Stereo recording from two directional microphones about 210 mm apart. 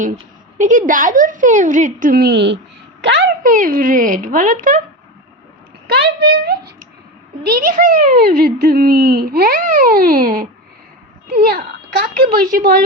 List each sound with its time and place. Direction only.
0.6 s a woman's voice: 40° right (ahead or behind); by 3.2 s 55° right (ahead or behind)
3.4 s speech: 40° right (ahead or behind)
5.9 s a woman's voice: 50° right (ahead or behind)